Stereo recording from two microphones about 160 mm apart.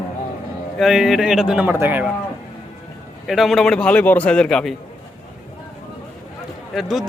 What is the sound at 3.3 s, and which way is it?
A man's voice, centre (ahead or behind).